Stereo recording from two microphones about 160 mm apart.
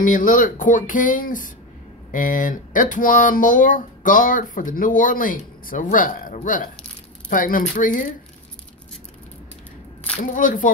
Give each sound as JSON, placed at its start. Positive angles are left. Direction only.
{"t": 0.0, "sound": "speech", "side_deg": 55}
{"t": 10.2, "sound": "speech", "side_deg": 55}